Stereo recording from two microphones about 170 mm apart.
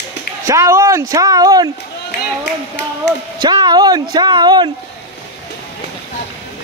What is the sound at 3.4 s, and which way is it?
Speech, 25° right (ahead or behind).